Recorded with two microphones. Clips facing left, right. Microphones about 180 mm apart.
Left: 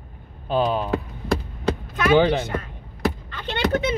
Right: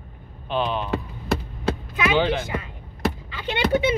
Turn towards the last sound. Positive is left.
turn(degrees=-10)  # may be behind; listen again after turning